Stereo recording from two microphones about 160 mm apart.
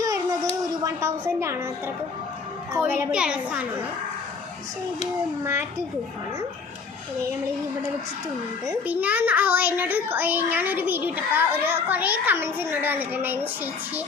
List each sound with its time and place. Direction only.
0.0 s a sound: 20° right (ahead or behind)
0.9 s a woman's voice: 15° right (ahead or behind)
2.7 s a child's voice: 10° right (ahead or behind)
8.9 s a child's voice: 10° right (ahead or behind)